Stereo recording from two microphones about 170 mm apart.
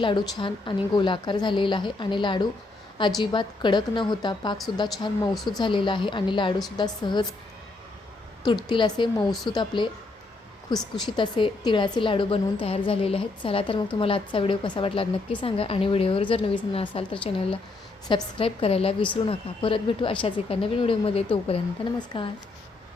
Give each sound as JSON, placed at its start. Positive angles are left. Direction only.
{"t": 0.0, "sound": "a woman's voice", "side_deg": 25}
{"t": 8.7, "sound": "a woman's voice", "side_deg": 30}
{"t": 9.3, "sound": "speech", "side_deg": 0}
{"t": 9.6, "sound": "a woman's voice", "side_deg": 30}
{"t": 10.8, "sound": "speech", "side_deg": 0}
{"t": 11.2, "sound": "a woman's voice", "side_deg": 30}